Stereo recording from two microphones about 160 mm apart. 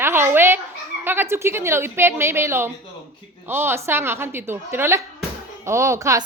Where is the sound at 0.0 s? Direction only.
15° right (ahead or behind).